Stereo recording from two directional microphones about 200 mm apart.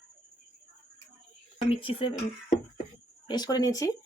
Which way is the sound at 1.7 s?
30° left (ahead or behind).